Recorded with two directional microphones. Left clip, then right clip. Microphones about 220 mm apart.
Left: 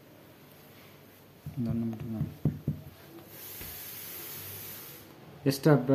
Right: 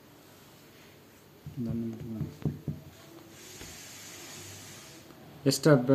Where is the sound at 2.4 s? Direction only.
20° left (ahead or behind).